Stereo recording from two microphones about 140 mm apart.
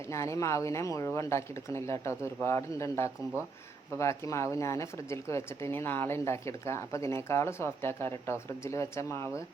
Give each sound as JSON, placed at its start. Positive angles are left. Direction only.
{"t": 0.1, "sound": "speech", "side_deg": 20}